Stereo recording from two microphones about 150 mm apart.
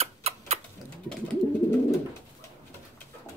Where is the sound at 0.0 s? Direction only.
45° right (ahead or behind).